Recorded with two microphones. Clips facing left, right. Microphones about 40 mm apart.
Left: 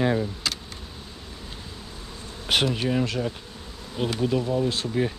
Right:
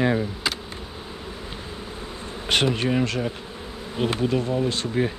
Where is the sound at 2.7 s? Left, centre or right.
Centre.